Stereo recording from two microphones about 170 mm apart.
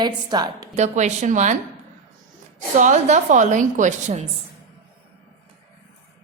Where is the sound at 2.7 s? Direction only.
45° right (ahead or behind).